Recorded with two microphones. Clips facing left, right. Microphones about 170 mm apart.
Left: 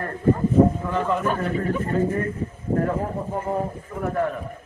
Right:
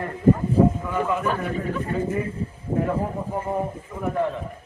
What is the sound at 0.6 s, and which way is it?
A man's voice, 5° right (ahead or behind).